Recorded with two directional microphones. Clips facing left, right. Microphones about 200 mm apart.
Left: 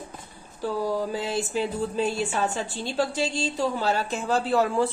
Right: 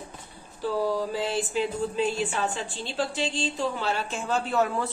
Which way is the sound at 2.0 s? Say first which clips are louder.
Left 2 dB; 40° left (ahead or behind).